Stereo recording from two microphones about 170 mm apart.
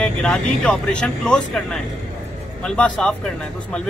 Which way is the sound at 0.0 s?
5° left (ahead or behind).